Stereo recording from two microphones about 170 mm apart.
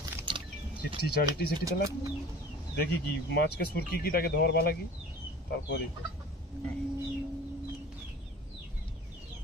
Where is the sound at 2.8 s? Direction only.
70° left (ahead or behind).